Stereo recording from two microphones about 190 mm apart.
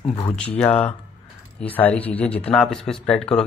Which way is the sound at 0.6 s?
5° left (ahead or behind).